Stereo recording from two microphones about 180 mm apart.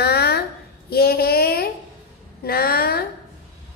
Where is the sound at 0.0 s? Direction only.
60° left (ahead or behind).